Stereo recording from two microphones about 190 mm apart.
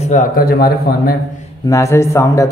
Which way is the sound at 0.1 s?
50° left (ahead or behind).